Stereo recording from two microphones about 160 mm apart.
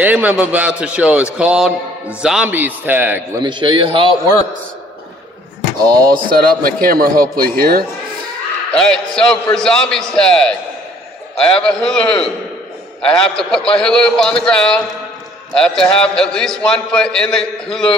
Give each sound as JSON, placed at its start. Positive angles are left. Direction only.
{"t": 0.0, "sound": "a man's voice", "side_deg": -10}
{"t": 3.4, "sound": "a man's voice", "side_deg": -30}
{"t": 5.9, "sound": "a man's voice", "side_deg": -25}
{"t": 6.1, "sound": "a man's voice", "side_deg": -65}
{"t": 8.7, "sound": "a man's voice", "side_deg": 5}